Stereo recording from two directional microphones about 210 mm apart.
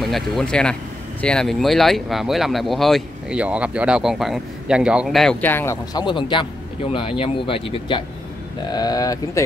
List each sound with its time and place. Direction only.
0.0 s speech: centre (ahead or behind); by 9.4 s 15° left (ahead or behind)